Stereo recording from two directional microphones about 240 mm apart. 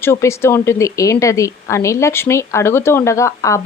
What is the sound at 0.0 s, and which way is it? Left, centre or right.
Speech, centre.